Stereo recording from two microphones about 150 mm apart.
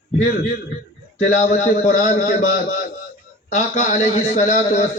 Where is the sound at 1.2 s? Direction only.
55° left (ahead or behind).